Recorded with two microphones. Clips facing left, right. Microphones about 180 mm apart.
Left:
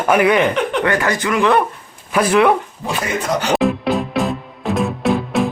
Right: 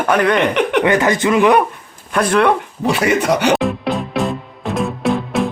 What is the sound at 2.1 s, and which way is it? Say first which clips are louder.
Speech: left 1 dB; 5° left (ahead or behind).